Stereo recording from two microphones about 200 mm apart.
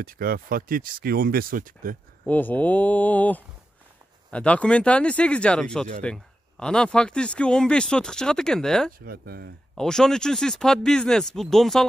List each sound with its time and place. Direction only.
0.0 s speech: 45° right (ahead or behind)
2.2 s speech: 10° left (ahead or behind)
9.0 s speech: 50° right (ahead or behind)
9.8 s speech: 5° left (ahead or behind)